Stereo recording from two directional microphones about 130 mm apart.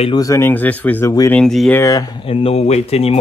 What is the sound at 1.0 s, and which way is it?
Speech, 25° left (ahead or behind).